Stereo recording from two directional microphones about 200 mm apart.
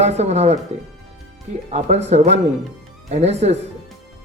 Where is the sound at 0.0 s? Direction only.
35° right (ahead or behind).